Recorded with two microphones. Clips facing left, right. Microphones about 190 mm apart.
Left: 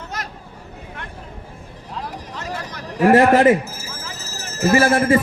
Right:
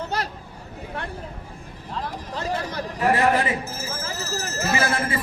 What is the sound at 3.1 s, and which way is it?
Speech, 45° left (ahead or behind).